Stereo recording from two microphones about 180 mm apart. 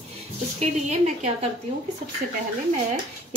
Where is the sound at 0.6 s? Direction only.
40° right (ahead or behind).